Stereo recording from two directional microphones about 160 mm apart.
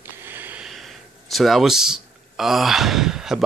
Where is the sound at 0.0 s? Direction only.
15° right (ahead or behind).